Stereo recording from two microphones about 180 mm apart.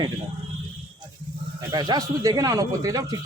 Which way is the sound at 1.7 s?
20° right (ahead or behind).